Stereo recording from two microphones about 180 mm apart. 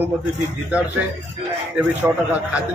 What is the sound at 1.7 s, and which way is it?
Speech, 10° right (ahead or behind).